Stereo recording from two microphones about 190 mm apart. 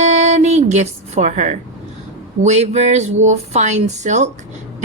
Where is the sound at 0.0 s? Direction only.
40° right (ahead or behind).